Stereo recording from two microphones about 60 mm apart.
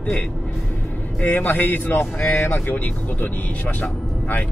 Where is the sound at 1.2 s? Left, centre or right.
Left.